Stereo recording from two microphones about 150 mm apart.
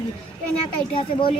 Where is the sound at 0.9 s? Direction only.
35° left (ahead or behind).